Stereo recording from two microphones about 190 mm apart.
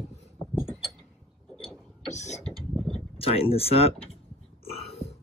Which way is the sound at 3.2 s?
30° left (ahead or behind).